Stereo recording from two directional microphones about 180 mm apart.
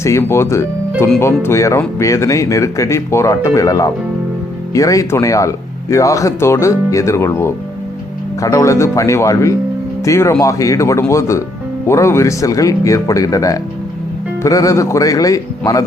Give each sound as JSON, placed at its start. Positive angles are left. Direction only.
{"t": 0.0, "sound": "speech", "side_deg": 15}